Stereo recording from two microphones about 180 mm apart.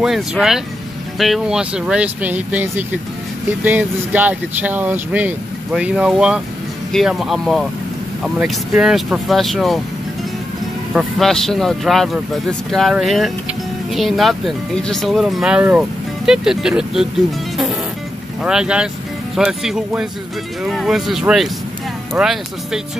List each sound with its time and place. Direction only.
0.0 s speech: 5° right (ahead or behind)
10.9 s speech: centre (ahead or behind)
18.4 s speech: 5° right (ahead or behind)